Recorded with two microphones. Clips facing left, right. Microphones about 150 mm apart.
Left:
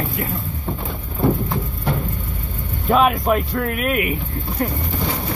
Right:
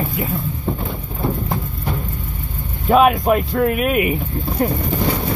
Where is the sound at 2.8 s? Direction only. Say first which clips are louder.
Right 3 dB; 10° right (ahead or behind).